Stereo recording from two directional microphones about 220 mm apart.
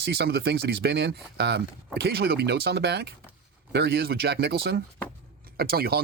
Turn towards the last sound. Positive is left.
turn(degrees=-45)  # may be behind; listen again after turning